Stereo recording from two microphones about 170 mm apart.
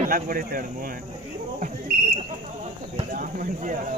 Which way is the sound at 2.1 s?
40° right (ahead or behind).